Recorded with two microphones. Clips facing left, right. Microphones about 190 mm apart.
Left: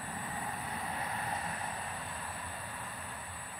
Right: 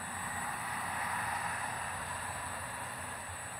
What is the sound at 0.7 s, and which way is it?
Vehicle, 25° left (ahead or behind).